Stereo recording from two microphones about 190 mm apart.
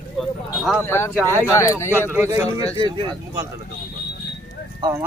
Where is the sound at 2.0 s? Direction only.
10° right (ahead or behind).